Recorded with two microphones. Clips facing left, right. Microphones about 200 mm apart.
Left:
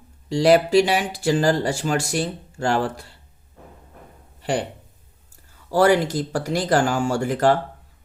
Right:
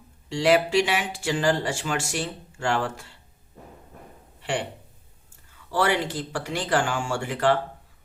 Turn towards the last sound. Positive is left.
turn(degrees=40)  # may be behind; listen again after turning